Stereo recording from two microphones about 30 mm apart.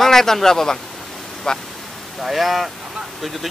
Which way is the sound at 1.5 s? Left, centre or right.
Left.